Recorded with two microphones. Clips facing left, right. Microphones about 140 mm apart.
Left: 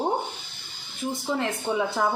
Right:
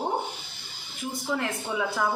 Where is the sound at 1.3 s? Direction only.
25° left (ahead or behind).